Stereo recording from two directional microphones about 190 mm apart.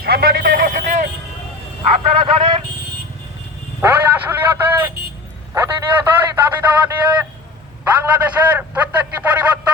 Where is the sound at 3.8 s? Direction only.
10° right (ahead or behind).